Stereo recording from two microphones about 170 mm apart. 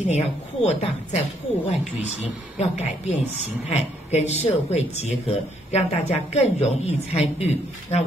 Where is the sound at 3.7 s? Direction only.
40° left (ahead or behind).